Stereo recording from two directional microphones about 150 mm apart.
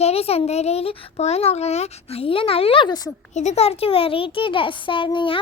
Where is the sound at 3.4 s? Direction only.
50° left (ahead or behind).